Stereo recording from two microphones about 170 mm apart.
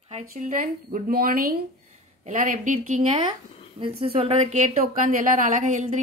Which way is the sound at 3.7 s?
35° right (ahead or behind).